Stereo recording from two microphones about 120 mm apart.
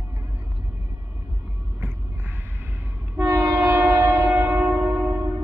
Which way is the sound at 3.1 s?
25° right (ahead or behind).